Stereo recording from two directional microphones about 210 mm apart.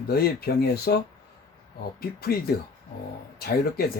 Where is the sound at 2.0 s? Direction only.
45° left (ahead or behind).